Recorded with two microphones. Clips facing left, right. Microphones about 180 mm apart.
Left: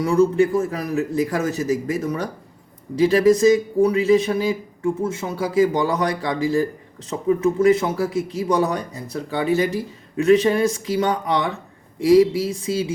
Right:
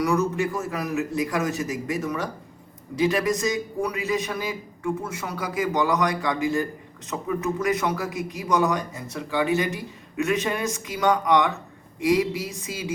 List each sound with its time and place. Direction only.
0.0 s a man's voice: 30° left (ahead or behind)